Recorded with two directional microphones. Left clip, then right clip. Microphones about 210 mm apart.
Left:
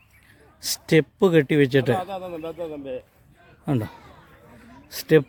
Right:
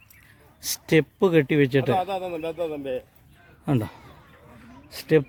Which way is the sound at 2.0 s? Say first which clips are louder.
Right 3 dB; 35° right (ahead or behind).